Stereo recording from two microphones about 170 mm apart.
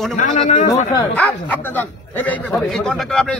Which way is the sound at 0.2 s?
45° left (ahead or behind).